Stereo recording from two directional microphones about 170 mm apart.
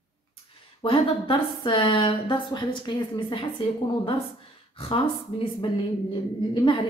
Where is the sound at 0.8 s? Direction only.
30° left (ahead or behind).